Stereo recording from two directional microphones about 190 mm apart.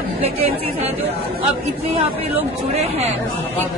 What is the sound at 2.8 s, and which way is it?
Speech, 35° right (ahead or behind).